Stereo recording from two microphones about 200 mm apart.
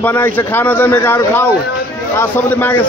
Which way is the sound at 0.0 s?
10° left (ahead or behind).